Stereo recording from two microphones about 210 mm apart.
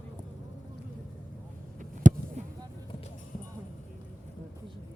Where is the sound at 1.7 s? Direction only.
35° right (ahead or behind).